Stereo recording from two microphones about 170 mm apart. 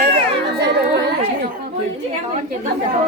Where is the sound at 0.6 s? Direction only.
70° right (ahead or behind).